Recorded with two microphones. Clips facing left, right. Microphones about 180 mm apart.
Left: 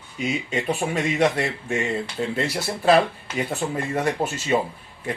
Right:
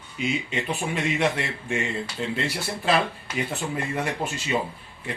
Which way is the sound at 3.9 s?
40° left (ahead or behind).